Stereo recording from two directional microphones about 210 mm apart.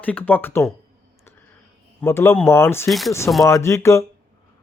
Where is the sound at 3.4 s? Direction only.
15° left (ahead or behind).